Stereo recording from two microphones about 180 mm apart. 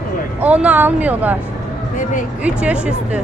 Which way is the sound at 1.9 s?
45° left (ahead or behind).